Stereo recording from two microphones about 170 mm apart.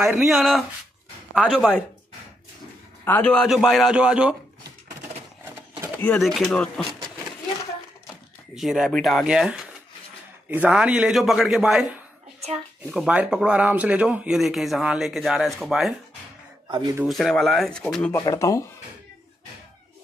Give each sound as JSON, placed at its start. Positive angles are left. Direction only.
{"t": 0.0, "sound": "speech", "side_deg": 0}
{"t": 3.1, "sound": "speech", "side_deg": 10}
{"t": 6.1, "sound": "speech", "side_deg": 0}
{"t": 8.5, "sound": "speech", "side_deg": 0}
{"t": 12.9, "sound": "speech", "side_deg": -5}
{"t": 16.6, "sound": "speech", "side_deg": -25}
{"t": 17.0, "sound": "speech", "side_deg": 0}
{"t": 18.1, "sound": "speech", "side_deg": 20}